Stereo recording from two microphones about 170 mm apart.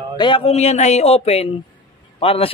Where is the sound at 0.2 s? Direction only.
35° left (ahead or behind).